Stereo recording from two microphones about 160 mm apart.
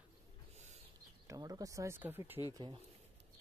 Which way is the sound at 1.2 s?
20° right (ahead or behind).